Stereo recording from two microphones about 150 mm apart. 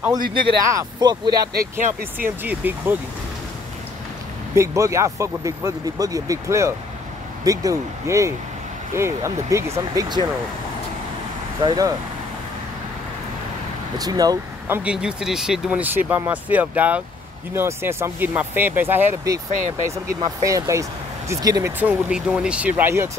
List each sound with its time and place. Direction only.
0.7 s speech: 25° right (ahead or behind)
1.4 s speech: 85° right; by 2.2 s 60° right (ahead or behind)
2.2 s speech: 15° right (ahead or behind)
4.6 s speech: 20° right (ahead or behind)
11.6 s speech: 30° right (ahead or behind)
13.9 s speech: 25° right (ahead or behind)
14.7 s speech: 5° right (ahead or behind); by 21.7 s 25° right (ahead or behind)
21.7 s speech: 10° right (ahead or behind)